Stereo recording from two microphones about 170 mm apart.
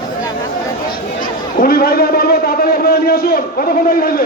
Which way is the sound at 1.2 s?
60° left (ahead or behind).